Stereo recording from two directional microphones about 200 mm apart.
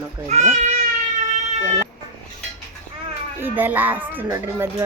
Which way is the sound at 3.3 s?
10° right (ahead or behind).